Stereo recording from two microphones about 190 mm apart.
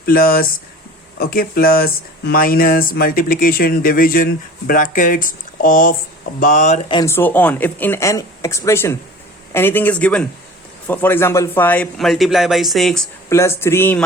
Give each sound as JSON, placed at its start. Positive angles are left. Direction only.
{"t": 0.0, "sound": "speech", "side_deg": 50}
{"t": 7.0, "sound": "a man's voice", "side_deg": 10}
{"t": 13.3, "sound": "speech", "side_deg": 15}